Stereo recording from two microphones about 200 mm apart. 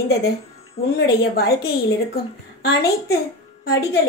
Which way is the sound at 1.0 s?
50° left (ahead or behind).